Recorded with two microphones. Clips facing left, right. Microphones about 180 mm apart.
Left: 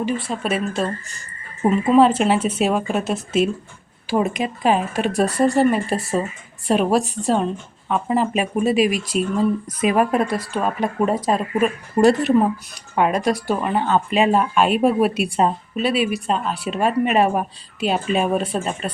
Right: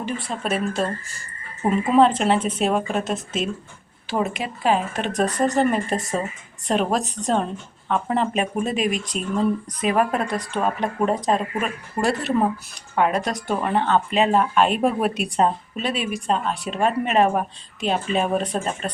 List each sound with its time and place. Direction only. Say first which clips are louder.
0.0 s speech: left 4 dB; 5° left (ahead or behind)
11.9 s speech: left 6 dB; 20° left (ahead or behind); by 18.9 s 5° left (ahead or behind)